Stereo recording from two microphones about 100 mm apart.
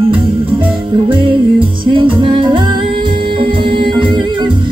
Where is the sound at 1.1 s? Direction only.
60° right (ahead or behind).